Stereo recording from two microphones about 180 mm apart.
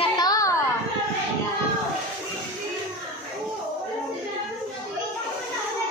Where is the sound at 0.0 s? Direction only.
20° left (ahead or behind).